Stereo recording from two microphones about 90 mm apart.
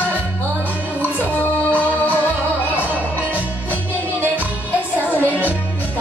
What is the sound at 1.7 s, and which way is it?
Music, 20° right (ahead or behind).